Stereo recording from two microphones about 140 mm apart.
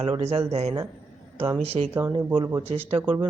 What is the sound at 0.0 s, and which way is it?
Speech, 50° right (ahead or behind).